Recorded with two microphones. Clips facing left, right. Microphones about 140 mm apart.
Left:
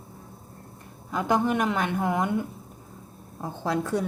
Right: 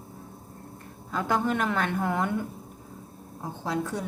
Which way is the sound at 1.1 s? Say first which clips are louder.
Left 2 dB; 15° left (ahead or behind).